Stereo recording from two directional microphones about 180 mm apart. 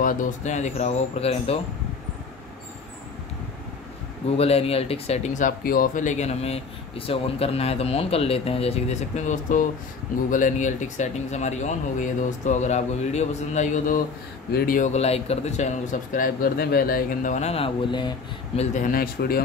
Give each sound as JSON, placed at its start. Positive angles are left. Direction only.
{"t": 0.0, "sound": "speech", "side_deg": 50}
{"t": 4.4, "sound": "speech", "side_deg": 35}
{"t": 18.6, "sound": "speech", "side_deg": 45}